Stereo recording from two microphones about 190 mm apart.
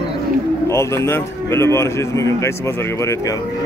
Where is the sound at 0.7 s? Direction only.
15° left (ahead or behind).